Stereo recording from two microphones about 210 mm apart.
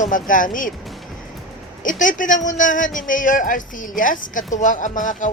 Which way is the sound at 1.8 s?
40° left (ahead or behind).